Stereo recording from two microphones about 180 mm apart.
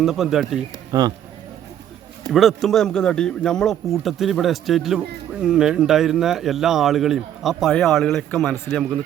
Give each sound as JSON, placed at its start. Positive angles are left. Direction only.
{"t": 0.0, "sound": "speech", "side_deg": 0}
{"t": 0.9, "sound": "speech", "side_deg": -20}
{"t": 2.3, "sound": "speech", "side_deg": 0}